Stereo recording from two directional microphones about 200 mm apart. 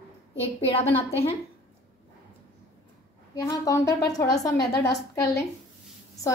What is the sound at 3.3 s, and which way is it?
A woman's voice, 15° left (ahead or behind).